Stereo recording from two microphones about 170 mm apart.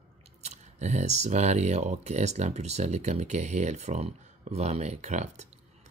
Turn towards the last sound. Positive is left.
turn(degrees=-45)  # may be behind; listen again after turning